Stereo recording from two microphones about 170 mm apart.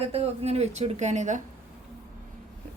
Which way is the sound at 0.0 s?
35° right (ahead or behind).